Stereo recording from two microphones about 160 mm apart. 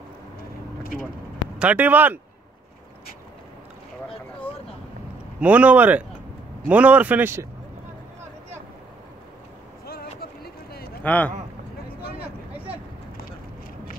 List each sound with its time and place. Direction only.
1.6 s a man's voice: 10° right (ahead or behind)
5.4 s a man's voice: 10° right (ahead or behind)
9.8 s a sound: 75° left (ahead or behind)
11.0 s speech: 10° left (ahead or behind)